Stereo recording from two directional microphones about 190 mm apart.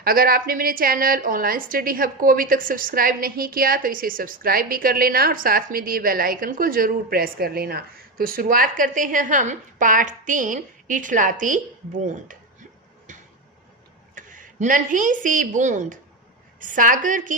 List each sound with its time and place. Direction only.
0.0 s a woman's voice: 50° right (ahead or behind)
13.1 s tick-tock: 40° right (ahead or behind)
14.2 s a woman's voice: 45° right (ahead or behind)